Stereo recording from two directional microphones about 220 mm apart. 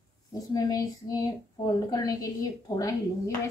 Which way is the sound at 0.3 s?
15° left (ahead or behind).